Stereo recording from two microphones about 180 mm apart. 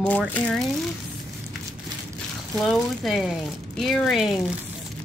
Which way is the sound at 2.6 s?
Centre (ahead or behind).